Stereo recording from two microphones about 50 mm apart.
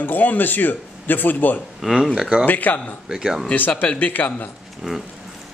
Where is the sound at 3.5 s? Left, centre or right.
Left.